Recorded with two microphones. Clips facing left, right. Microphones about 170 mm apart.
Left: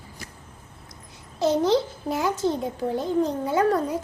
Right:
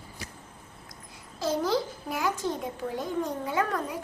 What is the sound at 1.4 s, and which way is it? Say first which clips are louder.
A child's voice: left 6 dB; 20° left (ahead or behind).